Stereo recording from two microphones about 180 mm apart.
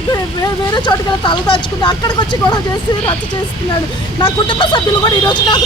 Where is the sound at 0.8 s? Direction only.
25° left (ahead or behind).